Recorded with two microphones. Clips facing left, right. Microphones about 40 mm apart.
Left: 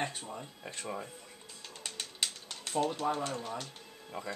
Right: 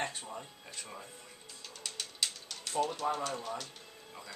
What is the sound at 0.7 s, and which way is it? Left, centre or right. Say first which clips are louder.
Speech: left 7 dB; left.